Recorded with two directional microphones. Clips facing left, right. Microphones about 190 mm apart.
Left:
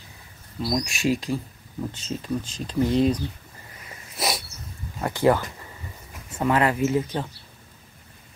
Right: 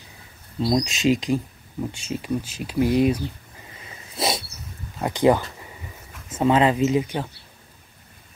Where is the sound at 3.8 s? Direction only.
25° right (ahead or behind).